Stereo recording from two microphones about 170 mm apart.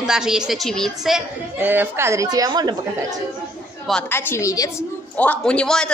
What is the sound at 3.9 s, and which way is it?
Speech, 10° left (ahead or behind).